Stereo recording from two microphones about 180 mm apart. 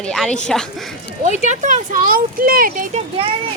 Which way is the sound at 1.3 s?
45° right (ahead or behind).